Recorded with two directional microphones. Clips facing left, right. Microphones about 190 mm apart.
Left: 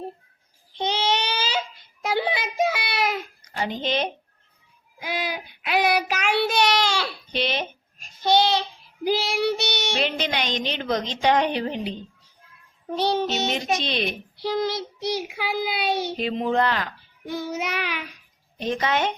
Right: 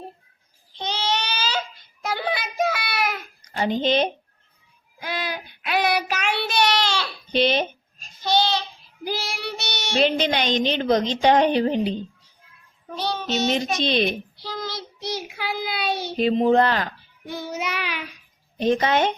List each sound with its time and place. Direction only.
0.8 s baby cry: 20° left (ahead or behind)
2.0 s child singing: 20° left (ahead or behind)
3.5 s speech: 30° right (ahead or behind)
4.9 s child singing: 5° left (ahead or behind)
7.3 s speech: 30° right (ahead or behind)
8.3 s child singing: 20° left (ahead or behind)
10.0 s a woman's voice: 30° right (ahead or behind)
12.9 s child singing: 25° left (ahead or behind)
13.8 s speech: 30° right (ahead or behind)
14.4 s child singing: 20° left (ahead or behind)
16.1 s speech: 35° right (ahead or behind)
17.7 s child singing: 50° left (ahead or behind)
18.6 s speech: 35° right (ahead or behind)